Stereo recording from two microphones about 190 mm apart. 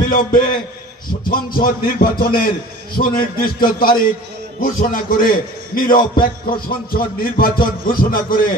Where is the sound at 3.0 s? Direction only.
40° left (ahead or behind).